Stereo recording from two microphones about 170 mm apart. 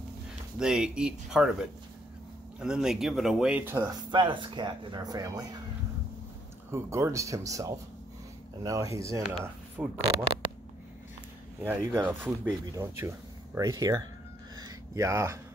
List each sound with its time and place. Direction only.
0.6 s speech: 5° right (ahead or behind)
4.1 s speech: 30° right (ahead or behind)
6.7 s speech: 15° right (ahead or behind)
11.6 s speech: 10° right (ahead or behind)
14.6 s a sound: 20° right (ahead or behind)